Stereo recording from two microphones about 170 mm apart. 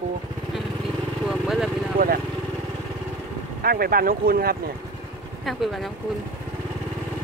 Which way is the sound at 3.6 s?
60° right (ahead or behind).